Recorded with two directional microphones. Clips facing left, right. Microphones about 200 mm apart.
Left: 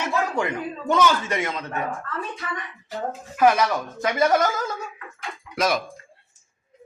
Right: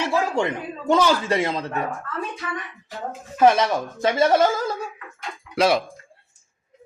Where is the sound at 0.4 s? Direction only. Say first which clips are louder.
Right 2 dB; 25° right (ahead or behind).